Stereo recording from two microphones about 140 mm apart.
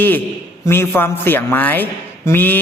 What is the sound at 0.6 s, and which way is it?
A man's voice, 15° left (ahead or behind).